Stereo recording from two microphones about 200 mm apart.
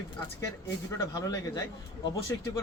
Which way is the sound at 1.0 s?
15° left (ahead or behind).